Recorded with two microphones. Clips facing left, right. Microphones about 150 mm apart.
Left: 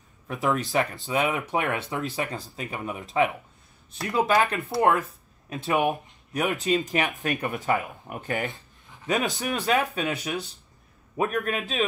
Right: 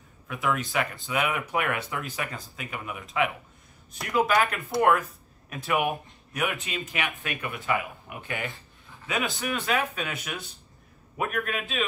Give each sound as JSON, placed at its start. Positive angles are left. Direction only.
{"t": 0.3, "sound": "speech", "side_deg": 35}
{"t": 6.3, "sound": "speech", "side_deg": 40}